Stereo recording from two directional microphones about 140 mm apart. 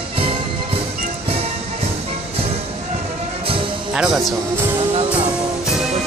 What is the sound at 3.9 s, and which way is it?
Music, 5° right (ahead or behind).